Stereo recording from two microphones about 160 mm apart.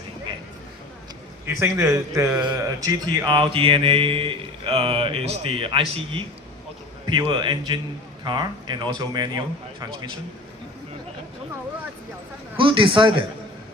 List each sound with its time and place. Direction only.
1.5 s speech: 20° right (ahead or behind)
12.5 s speech: 30° right (ahead or behind)